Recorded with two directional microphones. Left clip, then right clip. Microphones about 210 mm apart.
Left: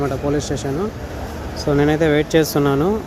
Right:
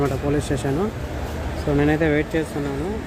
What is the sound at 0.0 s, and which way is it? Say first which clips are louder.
Speech: left 2 dB; 10° right (ahead or behind).